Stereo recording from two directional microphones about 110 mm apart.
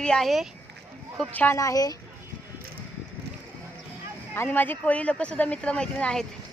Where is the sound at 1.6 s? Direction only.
35° left (ahead or behind).